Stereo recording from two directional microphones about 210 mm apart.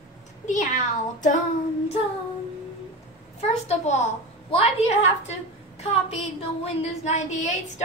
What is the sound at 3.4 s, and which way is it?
A woman's voice, 35° left (ahead or behind).